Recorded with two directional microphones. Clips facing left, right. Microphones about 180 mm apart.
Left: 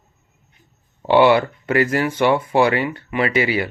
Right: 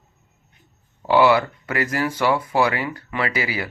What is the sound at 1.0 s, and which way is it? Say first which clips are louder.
Speech: left 3 dB; 25° left (ahead or behind).